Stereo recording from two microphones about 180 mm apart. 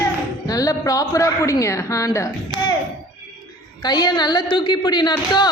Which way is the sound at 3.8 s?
25° left (ahead or behind).